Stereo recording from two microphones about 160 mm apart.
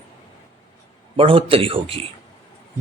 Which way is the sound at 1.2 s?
35° right (ahead or behind).